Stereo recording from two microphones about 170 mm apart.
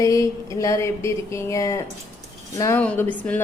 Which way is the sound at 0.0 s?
20° left (ahead or behind).